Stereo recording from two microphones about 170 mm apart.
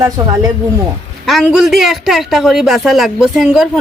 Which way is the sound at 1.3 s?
Centre (ahead or behind).